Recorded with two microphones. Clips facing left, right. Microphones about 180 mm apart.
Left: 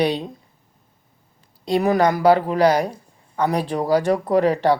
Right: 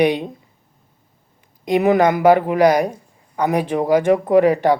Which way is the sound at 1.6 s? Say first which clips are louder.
Right 3 dB; 20° right (ahead or behind).